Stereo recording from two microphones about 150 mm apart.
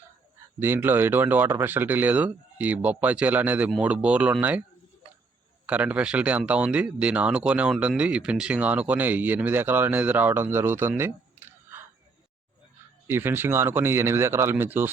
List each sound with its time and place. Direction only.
0.6 s speech: 15° right (ahead or behind)
5.6 s speech: 10° right (ahead or behind)
13.1 s speech: 15° right (ahead or behind)